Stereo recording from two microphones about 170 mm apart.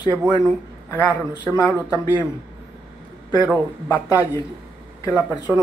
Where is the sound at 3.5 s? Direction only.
15° left (ahead or behind).